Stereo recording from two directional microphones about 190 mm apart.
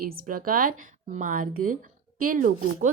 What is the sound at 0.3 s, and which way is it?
Speech, 45° right (ahead or behind).